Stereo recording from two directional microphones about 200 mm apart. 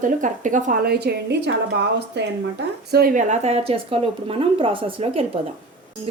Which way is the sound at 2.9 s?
45° right (ahead or behind).